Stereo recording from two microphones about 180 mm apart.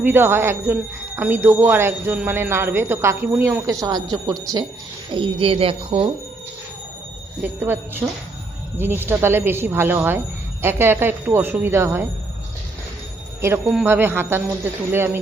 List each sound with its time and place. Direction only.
0.0 s speech: 10° right (ahead or behind)
5.1 s speech: 30° right (ahead or behind)
7.4 s speech: 10° right (ahead or behind)
13.4 s speech: 10° right (ahead or behind)